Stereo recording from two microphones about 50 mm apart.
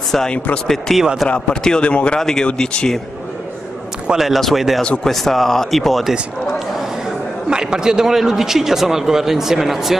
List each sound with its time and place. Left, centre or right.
0.9 s speech: centre
1.3 s a man's voice: centre
2.1 s speech: centre
4.1 s speech: centre
4.8 s speech: centre
5.1 s speech: centre
7.4 s a man's voice: centre